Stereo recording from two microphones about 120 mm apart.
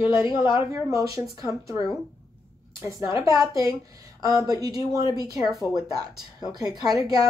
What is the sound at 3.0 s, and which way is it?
A woman's voice, 25° right (ahead or behind).